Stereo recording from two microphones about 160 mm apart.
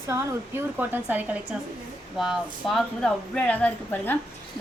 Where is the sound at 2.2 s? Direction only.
Centre (ahead or behind).